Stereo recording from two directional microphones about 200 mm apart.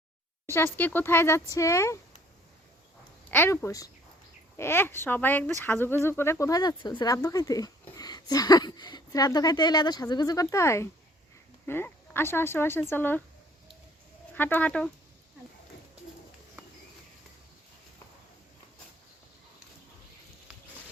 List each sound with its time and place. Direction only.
0.4 s speech: 10° left (ahead or behind)
3.2 s speech: 10° left (ahead or behind)
14.3 s speech: 10° left (ahead or behind)